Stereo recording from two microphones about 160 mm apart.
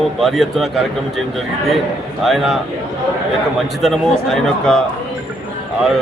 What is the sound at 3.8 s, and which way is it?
A man's voice, centre (ahead or behind).